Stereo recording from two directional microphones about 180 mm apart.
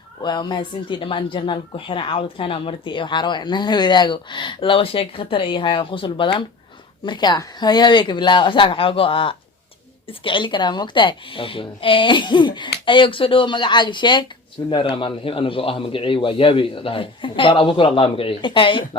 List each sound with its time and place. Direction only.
0.2 s speech: 25° left (ahead or behind)